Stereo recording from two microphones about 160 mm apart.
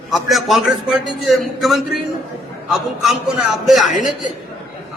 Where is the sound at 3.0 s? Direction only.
Centre (ahead or behind).